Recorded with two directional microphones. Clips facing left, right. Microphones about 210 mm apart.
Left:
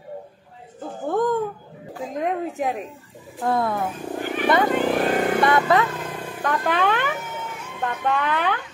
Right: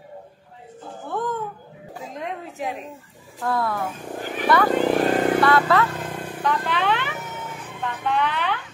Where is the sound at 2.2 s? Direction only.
50° left (ahead or behind).